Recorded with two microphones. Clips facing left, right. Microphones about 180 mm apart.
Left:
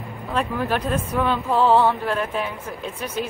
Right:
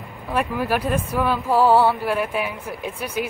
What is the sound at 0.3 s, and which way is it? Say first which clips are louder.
Speech: right 1 dB; 10° right (ahead or behind).